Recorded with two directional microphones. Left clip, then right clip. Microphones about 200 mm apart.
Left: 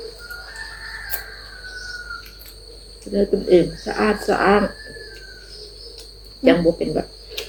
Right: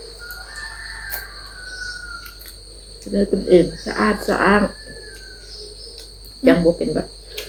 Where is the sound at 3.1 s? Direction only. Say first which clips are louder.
Right 1 dB; 5° right (ahead or behind).